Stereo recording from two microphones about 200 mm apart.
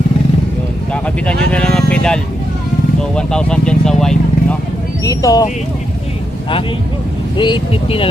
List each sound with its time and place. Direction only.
1.0 s speech: 5° left (ahead or behind)
5.0 s speech: 15° left (ahead or behind)
7.3 s speech: 25° left (ahead or behind)